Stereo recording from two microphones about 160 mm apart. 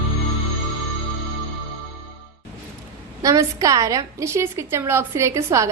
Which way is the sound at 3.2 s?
20° right (ahead or behind).